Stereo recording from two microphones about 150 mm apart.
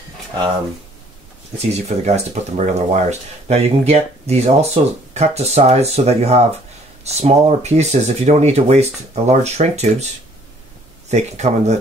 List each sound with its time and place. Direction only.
1.7 s speech: 45° right (ahead or behind)